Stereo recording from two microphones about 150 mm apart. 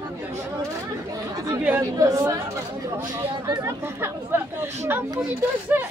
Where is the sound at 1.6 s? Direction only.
15° right (ahead or behind).